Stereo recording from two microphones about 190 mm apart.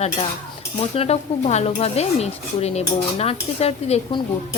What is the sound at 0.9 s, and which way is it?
Speech, 35° left (ahead or behind).